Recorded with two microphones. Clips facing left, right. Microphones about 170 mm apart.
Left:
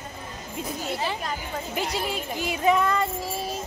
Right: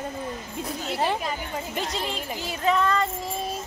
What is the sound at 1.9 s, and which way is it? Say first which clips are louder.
Speech: left 2 dB; 10° left (ahead or behind).